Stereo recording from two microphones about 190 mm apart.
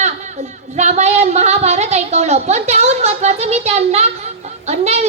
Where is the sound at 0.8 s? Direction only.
35° right (ahead or behind).